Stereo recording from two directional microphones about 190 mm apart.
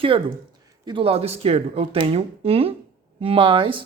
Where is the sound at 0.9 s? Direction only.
30° right (ahead or behind).